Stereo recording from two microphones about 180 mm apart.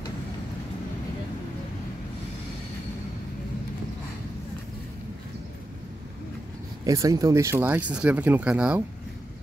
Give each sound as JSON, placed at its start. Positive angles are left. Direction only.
{"t": 6.8, "sound": "speech", "side_deg": -20}